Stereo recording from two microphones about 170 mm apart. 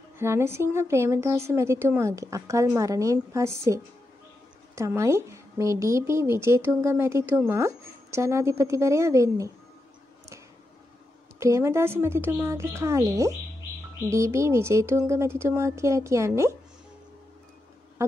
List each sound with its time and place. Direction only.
0.2 s a woman's voice: 15° right (ahead or behind)
11.3 s a woman's voice: 15° right (ahead or behind)